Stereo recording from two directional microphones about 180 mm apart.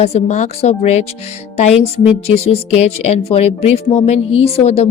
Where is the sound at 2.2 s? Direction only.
35° left (ahead or behind).